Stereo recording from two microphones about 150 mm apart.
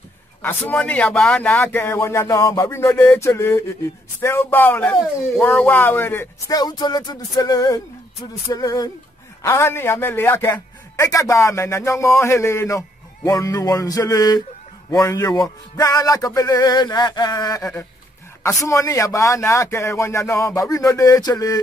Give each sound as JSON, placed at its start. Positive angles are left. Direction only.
{"t": 0.4, "sound": "a man's voice", "side_deg": 10}